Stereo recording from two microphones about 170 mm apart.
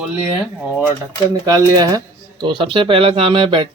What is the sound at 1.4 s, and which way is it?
Speech, 20° right (ahead or behind).